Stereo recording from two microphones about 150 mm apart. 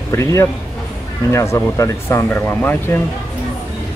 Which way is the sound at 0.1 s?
20° left (ahead or behind).